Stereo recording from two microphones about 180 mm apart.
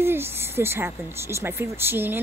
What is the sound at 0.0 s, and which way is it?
Speech, 15° right (ahead or behind).